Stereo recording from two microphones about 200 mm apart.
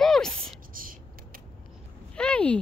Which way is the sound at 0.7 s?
45° right (ahead or behind).